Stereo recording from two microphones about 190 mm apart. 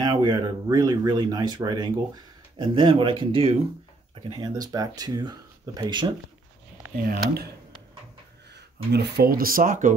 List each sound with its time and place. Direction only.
0.0 s speech: 25° right (ahead or behind)
7.1 s speech: 55° right (ahead or behind)
8.9 s speech: 60° right (ahead or behind); by 9.9 s 45° right (ahead or behind)